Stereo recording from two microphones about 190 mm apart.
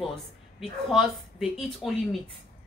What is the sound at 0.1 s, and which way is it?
Speech, centre (ahead or behind).